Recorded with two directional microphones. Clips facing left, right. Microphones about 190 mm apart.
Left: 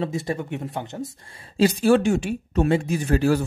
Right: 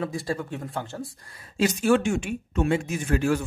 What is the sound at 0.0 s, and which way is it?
Speech, 25° left (ahead or behind).